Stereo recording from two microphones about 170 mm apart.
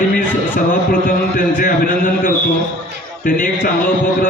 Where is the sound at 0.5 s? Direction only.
55° left (ahead or behind).